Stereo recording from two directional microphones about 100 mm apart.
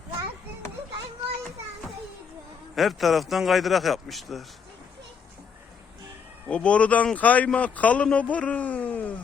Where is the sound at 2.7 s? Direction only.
Centre (ahead or behind).